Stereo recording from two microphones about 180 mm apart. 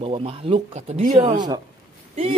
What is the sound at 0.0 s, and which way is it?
Speech, 30° right (ahead or behind).